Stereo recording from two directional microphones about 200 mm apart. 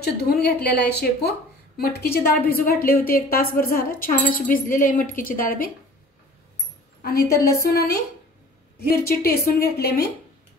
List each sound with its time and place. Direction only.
0.0 s speech: 50° left (ahead or behind)
7.0 s speech: 50° left (ahead or behind)